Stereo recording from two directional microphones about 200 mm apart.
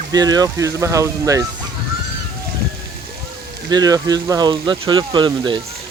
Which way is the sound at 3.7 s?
20° right (ahead or behind).